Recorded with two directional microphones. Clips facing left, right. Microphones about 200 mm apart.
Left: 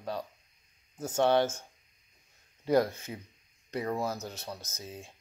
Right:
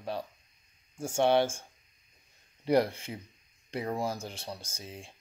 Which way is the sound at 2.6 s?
30° right (ahead or behind).